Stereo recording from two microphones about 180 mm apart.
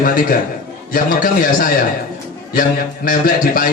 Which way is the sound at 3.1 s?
50° left (ahead or behind).